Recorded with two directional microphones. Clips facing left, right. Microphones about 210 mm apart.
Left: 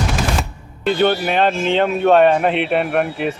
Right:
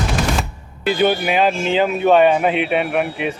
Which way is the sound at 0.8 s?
5° right (ahead or behind).